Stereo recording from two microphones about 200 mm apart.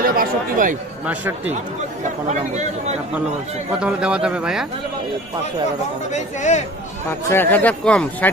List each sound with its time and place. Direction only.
0.0 s speech: 45° right (ahead or behind)
1.0 s speech: 5° right (ahead or behind)
2.2 s speech: 35° right (ahead or behind)
3.8 s speech: 5° right (ahead or behind)
6.1 s speech: 35° left (ahead or behind)
7.2 s speech: 10° left (ahead or behind)